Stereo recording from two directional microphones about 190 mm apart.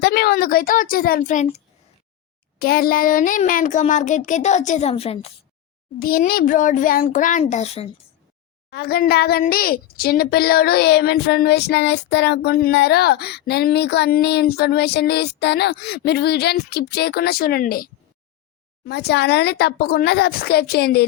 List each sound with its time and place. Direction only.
0.0 s a child's voice: 55° left (ahead or behind); by 1.6 s 40° left (ahead or behind)
2.6 s speech: 50° left (ahead or behind); by 5.3 s 30° left (ahead or behind)
6.0 s a child's voice: 50° left (ahead or behind); by 7.9 s 35° left (ahead or behind)
8.7 s a woman's voice: 55° left (ahead or behind)
18.9 s a woman's voice: 60° left (ahead or behind)